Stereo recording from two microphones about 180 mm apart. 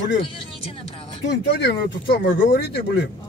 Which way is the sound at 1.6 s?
75° left (ahead or behind).